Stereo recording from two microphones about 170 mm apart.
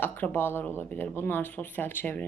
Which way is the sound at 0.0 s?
10° left (ahead or behind).